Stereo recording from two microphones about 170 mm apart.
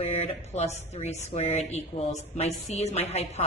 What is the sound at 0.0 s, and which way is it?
Speech, 40° left (ahead or behind).